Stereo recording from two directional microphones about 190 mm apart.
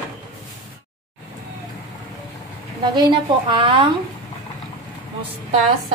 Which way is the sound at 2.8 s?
25° right (ahead or behind).